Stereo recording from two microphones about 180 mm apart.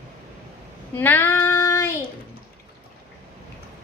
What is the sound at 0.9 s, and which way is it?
Child singing, 10° left (ahead or behind).